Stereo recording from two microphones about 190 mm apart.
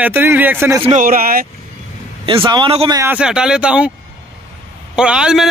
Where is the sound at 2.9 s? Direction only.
15° right (ahead or behind).